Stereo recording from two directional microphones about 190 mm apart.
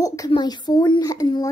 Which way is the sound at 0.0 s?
15° left (ahead or behind).